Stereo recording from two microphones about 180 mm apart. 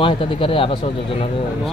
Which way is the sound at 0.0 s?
30° left (ahead or behind).